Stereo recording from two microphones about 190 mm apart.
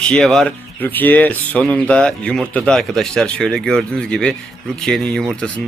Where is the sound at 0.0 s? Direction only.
5° left (ahead or behind).